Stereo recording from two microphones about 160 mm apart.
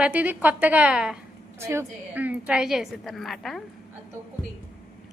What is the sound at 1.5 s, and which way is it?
A woman's voice, 15° right (ahead or behind).